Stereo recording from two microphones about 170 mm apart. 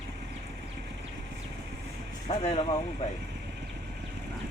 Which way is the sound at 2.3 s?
40° left (ahead or behind).